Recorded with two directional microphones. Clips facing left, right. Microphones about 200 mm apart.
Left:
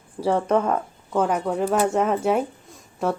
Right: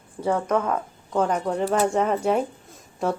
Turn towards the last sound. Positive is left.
turn(degrees=0)  # may be behind; listen again after turning